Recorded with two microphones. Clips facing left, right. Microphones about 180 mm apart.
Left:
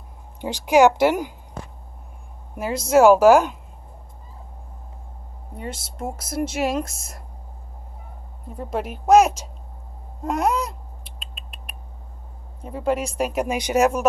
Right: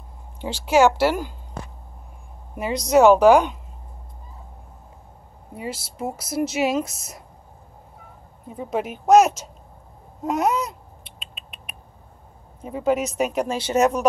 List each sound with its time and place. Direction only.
0.4 s speech: 15° left (ahead or behind)
2.5 s speech: centre (ahead or behind)
5.5 s speech: 5° right (ahead or behind)
8.5 s speech: centre (ahead or behind)
10.2 s a sound: centre (ahead or behind)
12.6 s speech: centre (ahead or behind)